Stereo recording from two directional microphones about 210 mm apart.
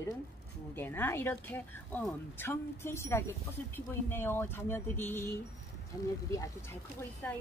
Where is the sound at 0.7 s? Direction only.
10° left (ahead or behind).